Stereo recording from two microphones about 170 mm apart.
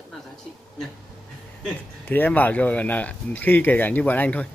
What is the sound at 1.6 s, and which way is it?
Speech, 10° left (ahead or behind).